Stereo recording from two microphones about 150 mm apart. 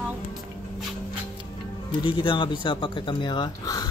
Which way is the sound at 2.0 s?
35° left (ahead or behind).